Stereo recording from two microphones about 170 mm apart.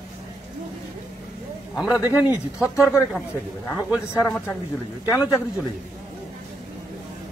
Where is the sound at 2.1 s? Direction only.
10° right (ahead or behind).